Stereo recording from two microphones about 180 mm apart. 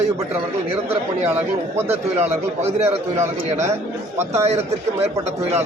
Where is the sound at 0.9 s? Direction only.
10° right (ahead or behind).